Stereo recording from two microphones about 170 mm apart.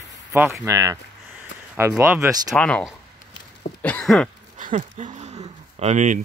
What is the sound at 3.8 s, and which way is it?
Throat clearing, 10° left (ahead or behind).